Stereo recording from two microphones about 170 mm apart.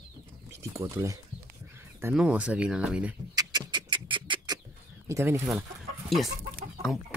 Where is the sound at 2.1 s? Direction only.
5° right (ahead or behind).